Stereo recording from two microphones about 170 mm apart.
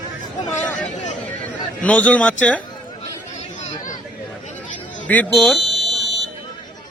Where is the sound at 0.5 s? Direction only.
45° left (ahead or behind).